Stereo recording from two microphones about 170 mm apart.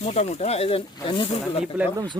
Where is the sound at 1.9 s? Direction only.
25° right (ahead or behind).